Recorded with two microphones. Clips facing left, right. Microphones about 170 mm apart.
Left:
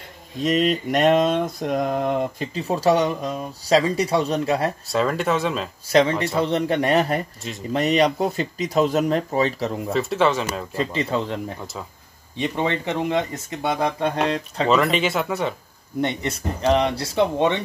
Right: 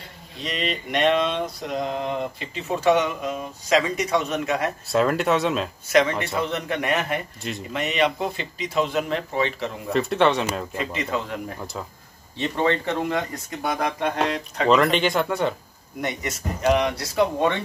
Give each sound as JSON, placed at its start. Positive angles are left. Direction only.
{"t": 0.4, "sound": "mantra", "side_deg": 45}
{"t": 4.8, "sound": "speech", "side_deg": 0}
{"t": 5.9, "sound": "mantra", "side_deg": 30}
{"t": 9.9, "sound": "speech", "side_deg": 0}
{"t": 10.8, "sound": "mantra", "side_deg": 30}
{"t": 12.4, "sound": "speech", "side_deg": 15}
{"t": 14.7, "sound": "speech", "side_deg": 0}
{"t": 16.0, "sound": "speech", "side_deg": 30}